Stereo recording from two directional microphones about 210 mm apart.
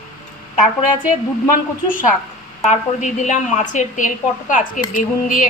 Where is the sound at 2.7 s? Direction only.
35° left (ahead or behind).